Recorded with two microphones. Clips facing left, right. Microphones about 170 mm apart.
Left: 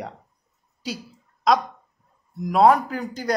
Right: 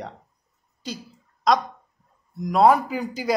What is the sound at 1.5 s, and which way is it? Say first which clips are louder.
Speech: left 1 dB; centre (ahead or behind).